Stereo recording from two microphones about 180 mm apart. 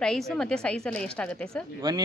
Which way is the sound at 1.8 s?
25° right (ahead or behind).